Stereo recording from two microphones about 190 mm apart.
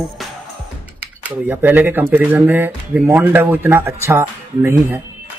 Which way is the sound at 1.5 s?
10° right (ahead or behind).